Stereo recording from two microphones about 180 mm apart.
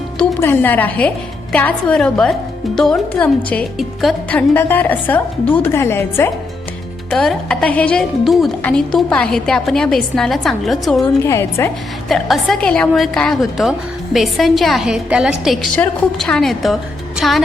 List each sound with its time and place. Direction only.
0.2 s a woman's voice: 10° left (ahead or behind)
7.1 s a woman's voice: 5° left (ahead or behind)
11.2 s a woman's voice: 15° left (ahead or behind)
12.0 s a woman's voice: centre (ahead or behind)